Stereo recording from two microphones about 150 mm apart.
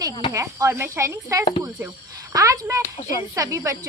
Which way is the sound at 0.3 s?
20° right (ahead or behind).